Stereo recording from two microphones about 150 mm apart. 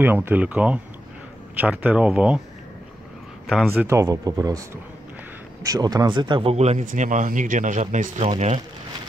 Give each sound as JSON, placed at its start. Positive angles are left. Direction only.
{"t": 0.0, "sound": "speech", "side_deg": -10}
{"t": 3.8, "sound": "speech", "side_deg": -20}
{"t": 6.5, "sound": "speech", "side_deg": -45}